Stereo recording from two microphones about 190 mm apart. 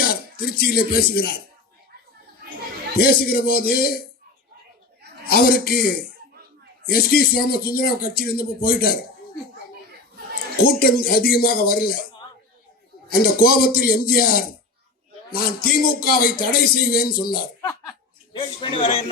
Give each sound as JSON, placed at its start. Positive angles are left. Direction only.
{"t": 0.0, "sound": "speech", "side_deg": 50}
{"t": 3.0, "sound": "speech", "side_deg": 55}
{"t": 5.2, "sound": "speech", "side_deg": 50}
{"t": 10.6, "sound": "speech", "side_deg": 50}
{"t": 13.1, "sound": "speech", "side_deg": 50}
{"t": 18.3, "sound": "a man's voice", "side_deg": 25}